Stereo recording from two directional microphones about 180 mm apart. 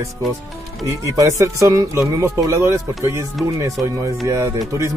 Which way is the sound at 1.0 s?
15° right (ahead or behind).